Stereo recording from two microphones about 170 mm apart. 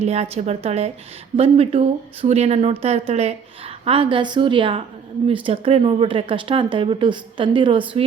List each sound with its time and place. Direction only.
0.0 s a woman's voice: 40° right (ahead or behind)